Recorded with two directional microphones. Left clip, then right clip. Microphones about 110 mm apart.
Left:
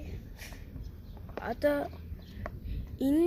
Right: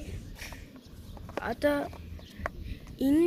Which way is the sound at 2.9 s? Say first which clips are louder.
Right 2 dB; 40° left (ahead or behind).